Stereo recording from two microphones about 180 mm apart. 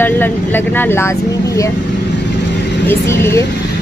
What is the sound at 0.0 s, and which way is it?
Speech, 10° left (ahead or behind).